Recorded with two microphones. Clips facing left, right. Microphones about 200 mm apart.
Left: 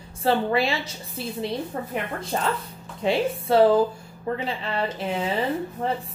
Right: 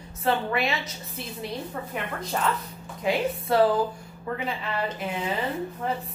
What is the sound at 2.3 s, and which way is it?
A woman's voice, 30° left (ahead or behind).